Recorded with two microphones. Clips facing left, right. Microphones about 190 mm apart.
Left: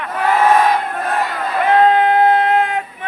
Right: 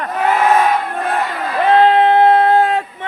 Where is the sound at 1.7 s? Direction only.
30° right (ahead or behind).